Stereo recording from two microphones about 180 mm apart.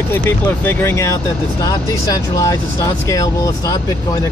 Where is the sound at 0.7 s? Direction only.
15° left (ahead or behind).